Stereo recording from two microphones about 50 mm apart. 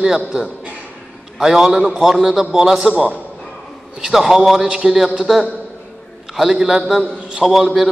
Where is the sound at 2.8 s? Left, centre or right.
Right.